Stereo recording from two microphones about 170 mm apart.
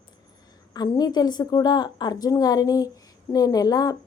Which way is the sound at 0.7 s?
25° left (ahead or behind).